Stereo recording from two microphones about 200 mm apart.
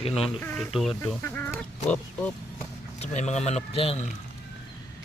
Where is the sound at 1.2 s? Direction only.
10° left (ahead or behind).